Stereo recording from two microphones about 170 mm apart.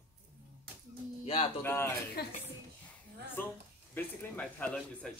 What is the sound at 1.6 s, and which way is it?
Speech, 15° left (ahead or behind).